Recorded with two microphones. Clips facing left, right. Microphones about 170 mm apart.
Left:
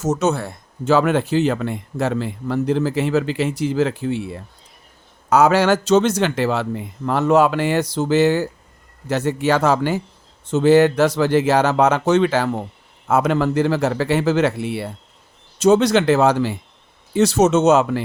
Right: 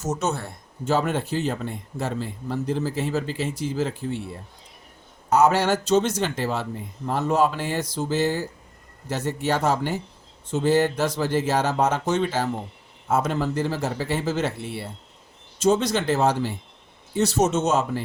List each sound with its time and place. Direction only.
0.0 s speech: 90° left
10.4 s speech: 80° left